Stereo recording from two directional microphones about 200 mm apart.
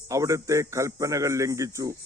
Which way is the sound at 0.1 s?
15° right (ahead or behind).